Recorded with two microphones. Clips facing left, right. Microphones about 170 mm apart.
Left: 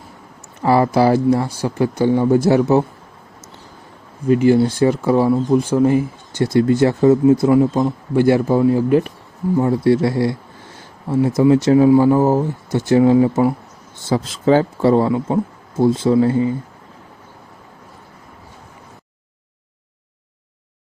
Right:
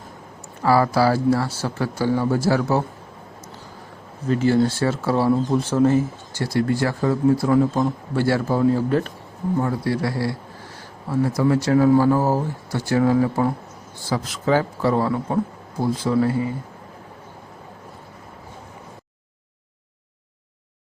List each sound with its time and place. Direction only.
0.6 s speech: 20° left (ahead or behind)
4.3 s a man's voice: 15° left (ahead or behind)
9.6 s speech: 25° left (ahead or behind)